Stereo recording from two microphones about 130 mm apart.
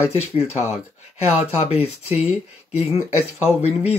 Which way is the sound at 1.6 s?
50° left (ahead or behind).